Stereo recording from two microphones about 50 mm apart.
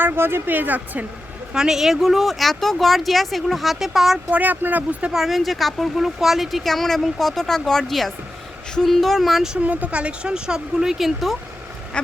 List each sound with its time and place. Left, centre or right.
0.0 s speech: right
1.5 s speech: centre
4.3 s speech: right
5.1 s speech: centre
9.6 s speech: right; by 11.3 s centre
11.9 s duck: left